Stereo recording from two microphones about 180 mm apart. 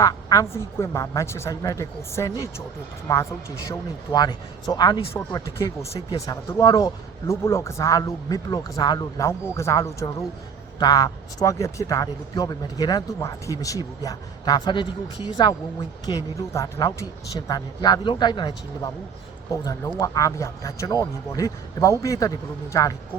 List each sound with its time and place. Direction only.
0.0 s a man's voice: 20° left (ahead or behind)